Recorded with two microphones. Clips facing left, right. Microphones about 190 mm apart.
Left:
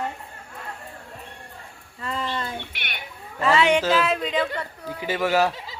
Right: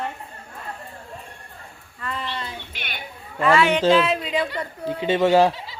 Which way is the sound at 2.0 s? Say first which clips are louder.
Left 1 dB; 30° left (ahead or behind).